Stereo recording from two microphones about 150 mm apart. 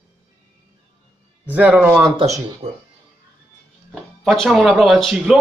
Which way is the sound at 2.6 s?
45° right (ahead or behind).